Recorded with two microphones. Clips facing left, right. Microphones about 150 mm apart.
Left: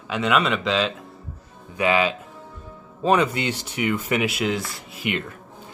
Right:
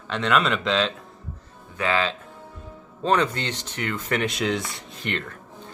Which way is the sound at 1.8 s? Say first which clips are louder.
Left 4 dB; 15° left (ahead or behind).